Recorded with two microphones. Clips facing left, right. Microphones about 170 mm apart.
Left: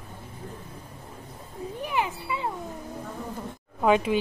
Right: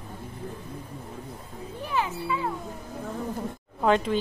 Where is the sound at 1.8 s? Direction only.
15° left (ahead or behind).